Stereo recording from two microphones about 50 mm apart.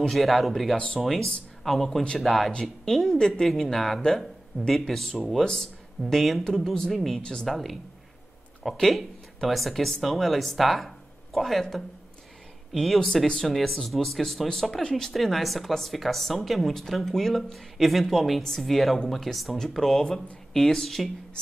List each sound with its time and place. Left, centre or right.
0.1 s a woman's voice: centre
0.7 s speech: centre
1.0 s a woman's voice: centre
7.2 s speech: centre
7.4 s a woman's voice: centre
8.7 s a woman's voice: centre
15.1 s a woman's voice: centre